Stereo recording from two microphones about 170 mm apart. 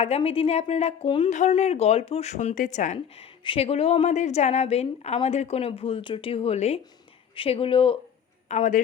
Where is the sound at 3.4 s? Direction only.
35° left (ahead or behind).